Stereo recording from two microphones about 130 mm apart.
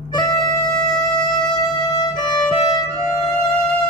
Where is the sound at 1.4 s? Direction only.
30° left (ahead or behind).